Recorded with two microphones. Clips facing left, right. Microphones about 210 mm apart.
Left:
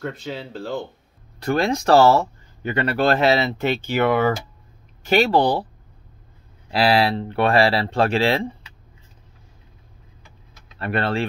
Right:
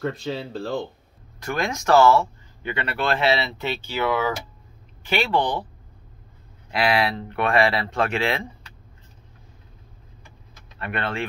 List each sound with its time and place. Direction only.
0.0 s speech: centre (ahead or behind)
1.4 s speech: 35° left (ahead or behind); by 4.3 s 55° left (ahead or behind)
5.0 s speech: 40° left (ahead or behind)
6.7 s speech: 35° left (ahead or behind)
10.8 s speech: 35° left (ahead or behind)